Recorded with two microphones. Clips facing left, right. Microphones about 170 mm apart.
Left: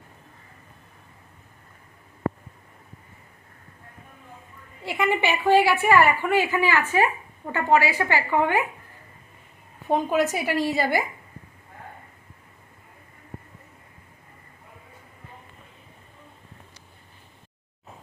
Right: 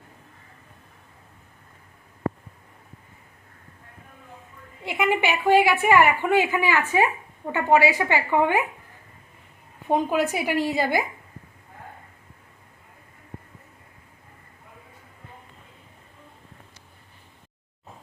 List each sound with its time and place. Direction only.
4.9 s a woman's voice: 10° right (ahead or behind)
9.9 s a woman's voice: 15° right (ahead or behind)